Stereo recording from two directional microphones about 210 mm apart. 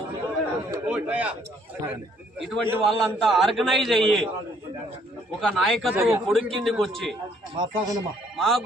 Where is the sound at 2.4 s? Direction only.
Centre (ahead or behind).